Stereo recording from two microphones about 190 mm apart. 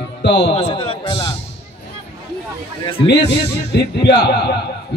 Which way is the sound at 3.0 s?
65° left (ahead or behind).